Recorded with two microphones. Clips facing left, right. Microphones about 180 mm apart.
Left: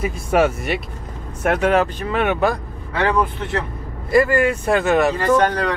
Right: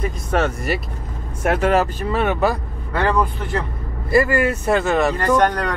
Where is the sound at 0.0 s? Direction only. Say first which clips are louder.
Left 3 dB; 10° left (ahead or behind).